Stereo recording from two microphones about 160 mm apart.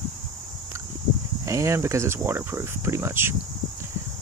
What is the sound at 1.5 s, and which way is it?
Speech, 20° right (ahead or behind).